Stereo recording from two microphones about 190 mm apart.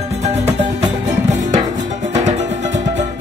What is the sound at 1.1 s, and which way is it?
Music, 40° right (ahead or behind).